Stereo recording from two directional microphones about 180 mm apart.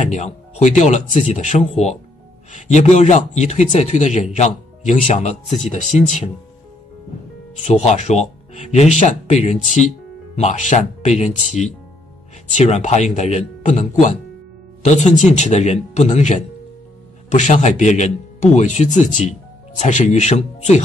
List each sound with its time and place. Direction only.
0.0 s speech: 40° left (ahead or behind)
7.5 s speech: 40° left (ahead or behind)